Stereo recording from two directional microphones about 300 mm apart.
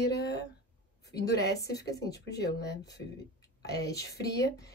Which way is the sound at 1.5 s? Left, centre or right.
Centre.